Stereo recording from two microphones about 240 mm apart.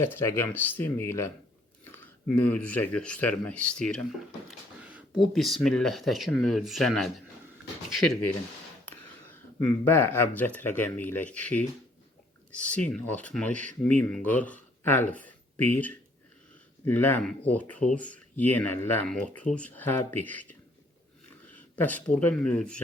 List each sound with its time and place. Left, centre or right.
0.0 s speech: centre
1.8 s chewing: centre
2.4 s speech: centre
9.6 s speech: centre
13.5 s speech: right
13.8 s speech: centre